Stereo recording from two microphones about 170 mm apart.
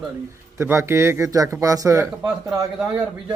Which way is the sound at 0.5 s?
15° right (ahead or behind).